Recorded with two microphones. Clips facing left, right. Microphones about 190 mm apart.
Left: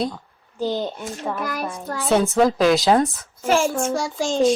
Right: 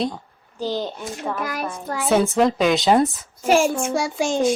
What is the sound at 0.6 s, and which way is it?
Speech, 20° left (ahead or behind).